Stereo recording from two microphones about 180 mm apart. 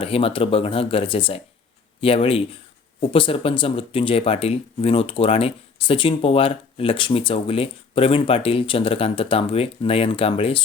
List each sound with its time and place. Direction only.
0.0 s speech: 30° left (ahead or behind)